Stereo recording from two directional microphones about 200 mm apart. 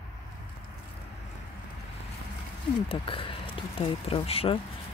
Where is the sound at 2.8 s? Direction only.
25° left (ahead or behind).